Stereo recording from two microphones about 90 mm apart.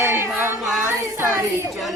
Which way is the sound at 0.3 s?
Centre (ahead or behind).